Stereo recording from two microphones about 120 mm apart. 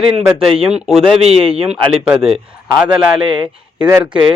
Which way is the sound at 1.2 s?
55° right (ahead or behind).